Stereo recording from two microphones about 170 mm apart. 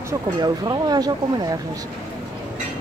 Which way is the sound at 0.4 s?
25° right (ahead or behind).